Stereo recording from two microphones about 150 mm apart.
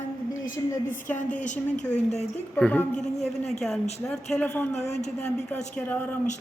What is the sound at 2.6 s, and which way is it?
Speech, 10° left (ahead or behind).